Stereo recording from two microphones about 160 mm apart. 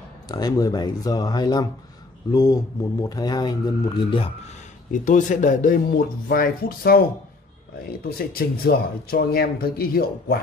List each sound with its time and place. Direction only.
0.3 s speech: 25° left (ahead or behind)
5.0 s speech: 50° left (ahead or behind)
8.0 s speech: 75° left (ahead or behind)